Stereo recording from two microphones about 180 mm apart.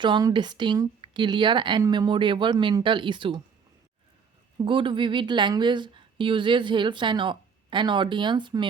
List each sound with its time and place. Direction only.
0.0 s a woman's voice: 25° right (ahead or behind)
4.5 s a woman's voice: 30° right (ahead or behind)